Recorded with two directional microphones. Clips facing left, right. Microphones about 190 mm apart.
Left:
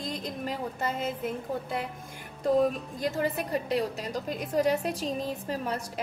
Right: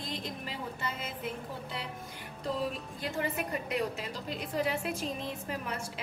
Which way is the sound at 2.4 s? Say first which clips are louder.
Left 10 dB; 45° left (ahead or behind).